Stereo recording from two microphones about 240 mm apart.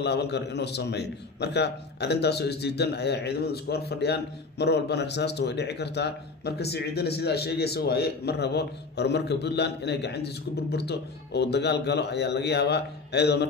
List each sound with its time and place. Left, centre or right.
0.0 s a man's voice: left